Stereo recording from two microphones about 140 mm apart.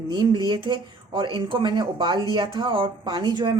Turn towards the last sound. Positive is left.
turn(degrees=-30)  # may be behind; listen again after turning